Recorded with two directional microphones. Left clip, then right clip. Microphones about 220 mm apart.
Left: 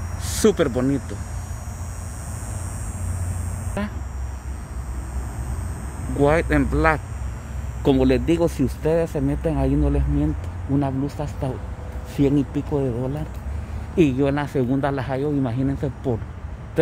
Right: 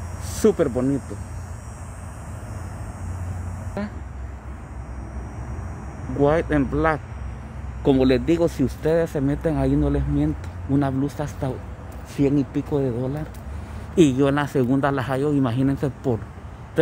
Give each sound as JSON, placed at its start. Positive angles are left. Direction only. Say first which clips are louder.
{"t": 0.4, "sound": "speech", "louder": "even", "side_deg": -5}
{"t": 3.8, "sound": "speech", "louder": "left 2 dB", "side_deg": 0}
{"t": 6.1, "sound": "speech", "louder": "left 1 dB", "side_deg": -5}
{"t": 12.2, "sound": "speech", "louder": "left 1 dB", "side_deg": 0}
{"t": 13.9, "sound": "speech", "louder": "right 2 dB", "side_deg": -15}